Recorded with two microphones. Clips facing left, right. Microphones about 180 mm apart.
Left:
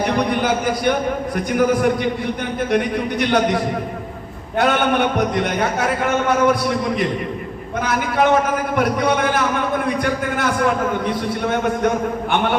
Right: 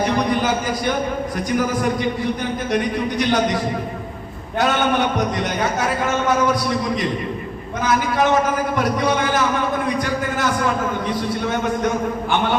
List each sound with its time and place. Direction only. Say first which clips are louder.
2.6 s a man's voice: left 2 dB; 60° left (ahead or behind)
7.9 s a man's voice: left 1 dB; 60° left (ahead or behind)